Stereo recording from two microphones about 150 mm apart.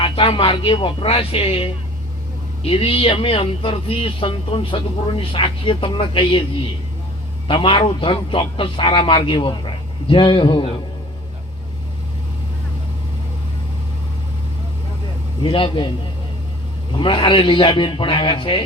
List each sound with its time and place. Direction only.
0.0 s speech: 35° left (ahead or behind)
7.4 s speech: 35° left (ahead or behind)
15.4 s speech: 35° left (ahead or behind)
17.0 s speech: 35° left (ahead or behind)